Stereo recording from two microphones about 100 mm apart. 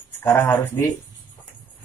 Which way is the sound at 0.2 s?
25° left (ahead or behind).